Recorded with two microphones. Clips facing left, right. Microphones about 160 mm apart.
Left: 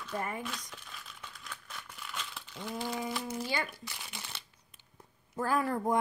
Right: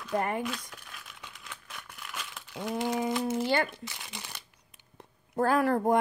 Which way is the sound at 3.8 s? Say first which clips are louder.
Right 3 dB; 15° right (ahead or behind).